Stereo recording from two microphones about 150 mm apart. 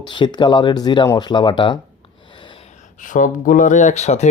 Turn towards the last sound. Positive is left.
turn(degrees=50)  # may be behind; listen again after turning